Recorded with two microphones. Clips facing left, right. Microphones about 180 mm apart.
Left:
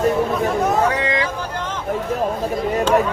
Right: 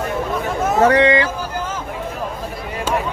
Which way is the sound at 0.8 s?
75° right (ahead or behind).